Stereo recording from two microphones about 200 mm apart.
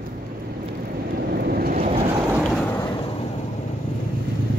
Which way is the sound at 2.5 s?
10° left (ahead or behind).